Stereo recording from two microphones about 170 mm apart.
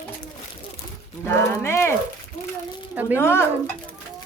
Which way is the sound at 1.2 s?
15° left (ahead or behind).